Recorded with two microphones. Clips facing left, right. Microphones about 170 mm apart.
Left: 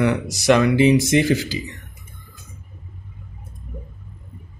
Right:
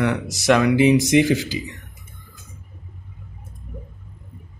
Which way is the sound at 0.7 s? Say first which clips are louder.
Even; 15° right (ahead or behind).